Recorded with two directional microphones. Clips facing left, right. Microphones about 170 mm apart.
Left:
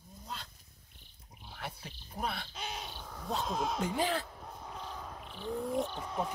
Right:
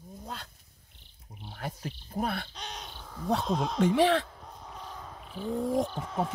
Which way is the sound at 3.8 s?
90° right.